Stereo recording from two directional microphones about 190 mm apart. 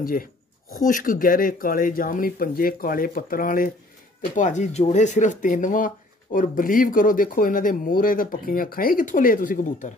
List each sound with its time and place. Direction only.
0.0 s speech: 50° left (ahead or behind)